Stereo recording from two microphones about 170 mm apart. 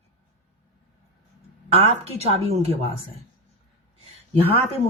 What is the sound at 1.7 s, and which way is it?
Speech, 35° right (ahead or behind).